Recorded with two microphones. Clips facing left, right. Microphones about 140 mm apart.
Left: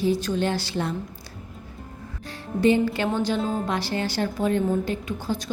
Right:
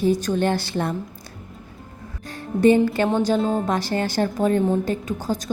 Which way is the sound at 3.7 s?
45° right (ahead or behind).